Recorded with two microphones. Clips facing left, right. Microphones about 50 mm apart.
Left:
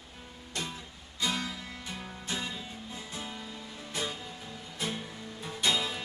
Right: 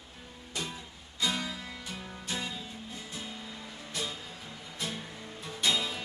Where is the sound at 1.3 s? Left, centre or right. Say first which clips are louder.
Even; centre.